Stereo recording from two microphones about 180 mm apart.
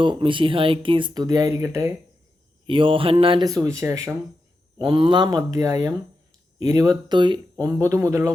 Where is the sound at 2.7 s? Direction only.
30° right (ahead or behind).